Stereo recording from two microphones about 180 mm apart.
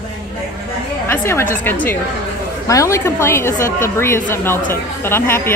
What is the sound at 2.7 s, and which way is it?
Speech, 15° left (ahead or behind).